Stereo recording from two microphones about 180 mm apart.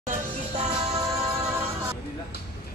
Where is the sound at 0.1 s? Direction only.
35° right (ahead or behind).